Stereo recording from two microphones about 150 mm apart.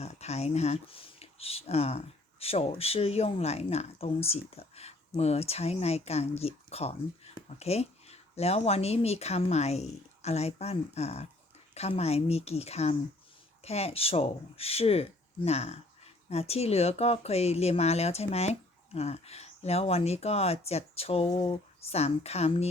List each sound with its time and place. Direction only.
0.0 s speech: 45° left (ahead or behind)